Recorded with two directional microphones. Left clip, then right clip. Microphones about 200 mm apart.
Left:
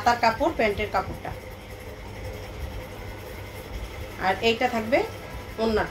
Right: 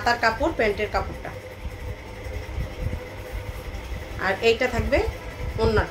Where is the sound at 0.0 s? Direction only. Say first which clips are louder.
Even; 15° right (ahead or behind).